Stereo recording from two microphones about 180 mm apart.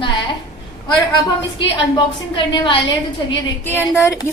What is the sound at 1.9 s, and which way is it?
A woman's voice, 25° left (ahead or behind).